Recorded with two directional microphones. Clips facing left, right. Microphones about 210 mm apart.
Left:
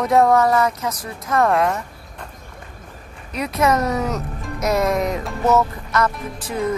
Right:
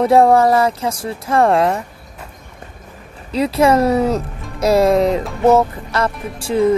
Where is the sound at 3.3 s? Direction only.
30° right (ahead or behind).